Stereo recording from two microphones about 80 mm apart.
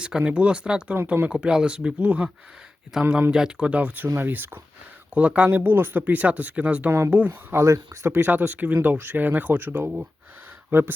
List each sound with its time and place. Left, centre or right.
0.0 s speech: centre
1.0 s speech: right
1.3 s speech: centre
2.9 s speech: centre; by 4.6 s right
5.1 s speech: centre
5.5 s speech: right
7.5 s speech: right